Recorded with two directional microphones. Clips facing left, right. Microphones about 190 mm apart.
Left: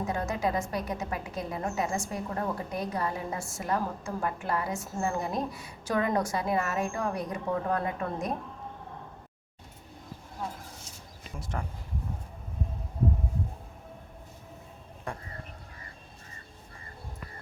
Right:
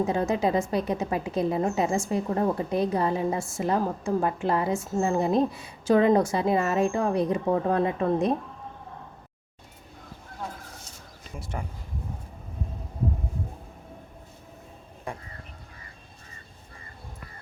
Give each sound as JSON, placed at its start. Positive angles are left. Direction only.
{"t": 0.0, "sound": "a woman's voice", "side_deg": -25}
{"t": 11.5, "sound": "speech", "side_deg": -10}